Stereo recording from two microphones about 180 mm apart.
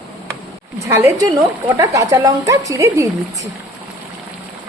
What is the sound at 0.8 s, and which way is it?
Speech, 15° right (ahead or behind).